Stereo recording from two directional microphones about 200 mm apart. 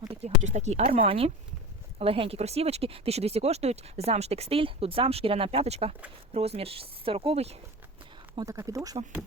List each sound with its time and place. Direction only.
0.0 s speech: 30° right (ahead or behind)
8.4 s speech: 15° right (ahead or behind)